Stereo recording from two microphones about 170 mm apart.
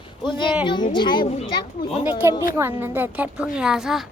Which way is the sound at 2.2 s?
15° right (ahead or behind).